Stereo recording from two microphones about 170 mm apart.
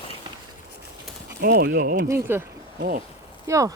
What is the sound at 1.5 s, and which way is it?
Speech, 70° right (ahead or behind).